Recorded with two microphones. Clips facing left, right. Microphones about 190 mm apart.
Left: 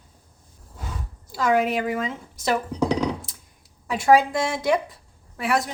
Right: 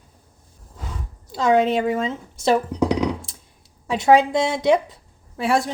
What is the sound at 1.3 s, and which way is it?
Speech, 25° right (ahead or behind).